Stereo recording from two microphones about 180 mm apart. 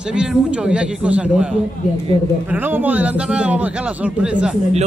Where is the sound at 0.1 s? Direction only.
5° right (ahead or behind).